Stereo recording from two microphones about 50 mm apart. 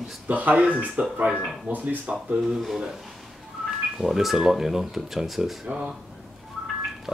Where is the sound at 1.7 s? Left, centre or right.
Right.